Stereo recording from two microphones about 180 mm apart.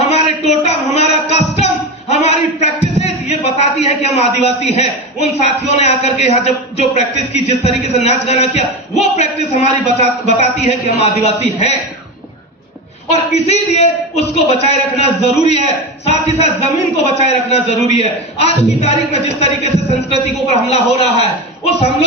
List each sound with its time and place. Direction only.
0.1 s speech: 35° left (ahead or behind)
13.3 s a man's voice: 35° left (ahead or behind)